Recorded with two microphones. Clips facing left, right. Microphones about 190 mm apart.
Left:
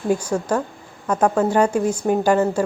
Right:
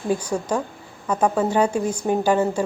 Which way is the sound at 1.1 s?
10° right (ahead or behind).